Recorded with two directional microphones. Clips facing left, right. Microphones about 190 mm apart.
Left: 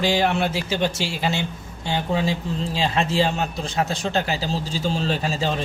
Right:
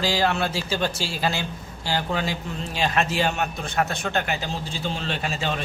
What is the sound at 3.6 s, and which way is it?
Speech, 60° right (ahead or behind).